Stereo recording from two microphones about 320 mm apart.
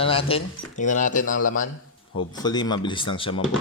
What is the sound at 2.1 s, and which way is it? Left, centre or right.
Speech, centre.